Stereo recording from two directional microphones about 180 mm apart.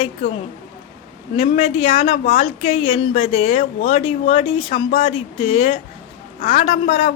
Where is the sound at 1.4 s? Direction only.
35° left (ahead or behind).